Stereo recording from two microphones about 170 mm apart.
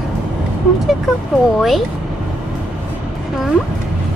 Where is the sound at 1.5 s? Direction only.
Centre (ahead or behind).